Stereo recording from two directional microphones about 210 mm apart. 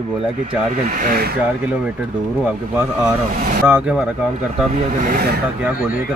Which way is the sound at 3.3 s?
40° right (ahead or behind).